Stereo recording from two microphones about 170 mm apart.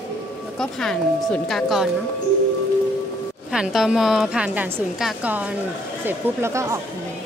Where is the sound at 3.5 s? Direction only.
5° right (ahead or behind).